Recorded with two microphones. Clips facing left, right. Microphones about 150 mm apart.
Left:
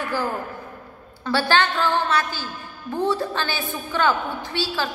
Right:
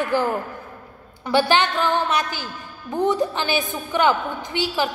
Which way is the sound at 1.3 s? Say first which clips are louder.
Right 2 dB; 15° right (ahead or behind).